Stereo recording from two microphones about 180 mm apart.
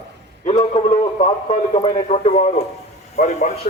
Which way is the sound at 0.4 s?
35° left (ahead or behind).